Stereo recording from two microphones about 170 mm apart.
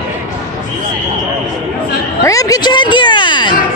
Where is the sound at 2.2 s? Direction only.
20° left (ahead or behind).